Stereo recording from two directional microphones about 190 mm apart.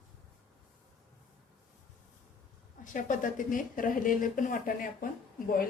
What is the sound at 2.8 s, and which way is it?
Speech, 45° left (ahead or behind).